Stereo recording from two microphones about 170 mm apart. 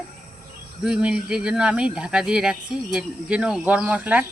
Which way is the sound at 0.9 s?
5° right (ahead or behind).